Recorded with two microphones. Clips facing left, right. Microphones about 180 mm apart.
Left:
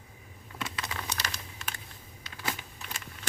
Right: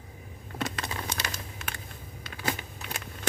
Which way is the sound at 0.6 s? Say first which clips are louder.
Right 4 dB; 50° right (ahead or behind).